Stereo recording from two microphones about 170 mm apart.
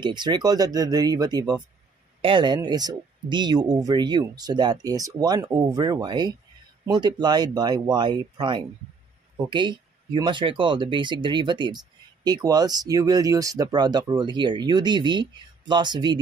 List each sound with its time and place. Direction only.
0.0 s speech: 25° right (ahead or behind)